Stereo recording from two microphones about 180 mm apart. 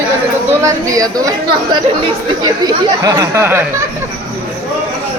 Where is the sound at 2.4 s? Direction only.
25° right (ahead or behind).